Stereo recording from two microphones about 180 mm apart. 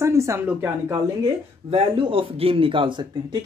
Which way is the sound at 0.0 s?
15° right (ahead or behind).